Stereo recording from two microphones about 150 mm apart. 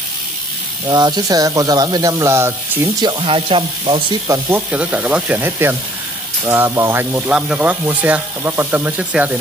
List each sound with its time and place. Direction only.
0.8 s speech: 30° right (ahead or behind)
3.0 s speech: 30° right (ahead or behind)
4.3 s speech: 15° right (ahead or behind)